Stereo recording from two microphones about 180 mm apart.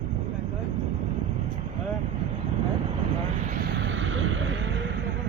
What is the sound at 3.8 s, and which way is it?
Vehicle, 90° right.